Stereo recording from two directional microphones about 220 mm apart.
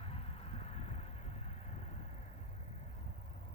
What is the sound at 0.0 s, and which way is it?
Vehicle, 25° left (ahead or behind).